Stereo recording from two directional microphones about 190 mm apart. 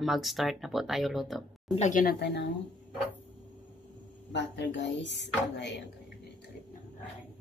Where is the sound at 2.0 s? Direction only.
60° left (ahead or behind).